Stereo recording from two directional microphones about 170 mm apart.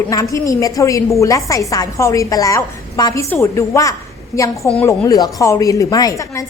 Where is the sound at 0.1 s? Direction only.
20° left (ahead or behind).